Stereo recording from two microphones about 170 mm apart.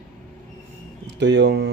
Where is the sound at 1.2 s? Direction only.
90° right.